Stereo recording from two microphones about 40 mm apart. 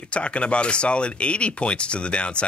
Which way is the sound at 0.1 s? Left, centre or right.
Left.